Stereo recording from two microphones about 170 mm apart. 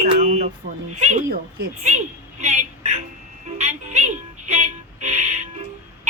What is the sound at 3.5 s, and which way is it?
Music, 40° right (ahead or behind).